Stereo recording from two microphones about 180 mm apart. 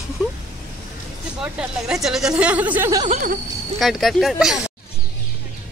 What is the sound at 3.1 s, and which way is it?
Speech, 45° right (ahead or behind).